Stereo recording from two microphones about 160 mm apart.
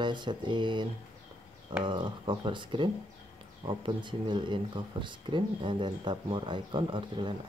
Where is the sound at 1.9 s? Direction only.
30° right (ahead or behind).